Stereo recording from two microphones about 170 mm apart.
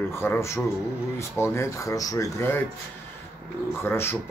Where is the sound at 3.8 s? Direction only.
15° left (ahead or behind).